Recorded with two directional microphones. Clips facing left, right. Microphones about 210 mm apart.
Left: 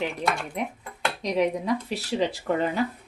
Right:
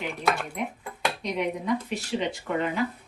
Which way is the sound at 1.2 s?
35° left (ahead or behind).